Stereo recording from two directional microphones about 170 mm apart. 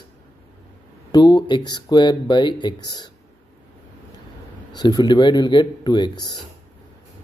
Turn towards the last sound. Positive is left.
turn(degrees=25)  # may be behind; listen again after turning